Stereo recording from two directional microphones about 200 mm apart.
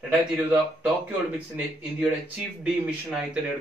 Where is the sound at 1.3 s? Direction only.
5° right (ahead or behind).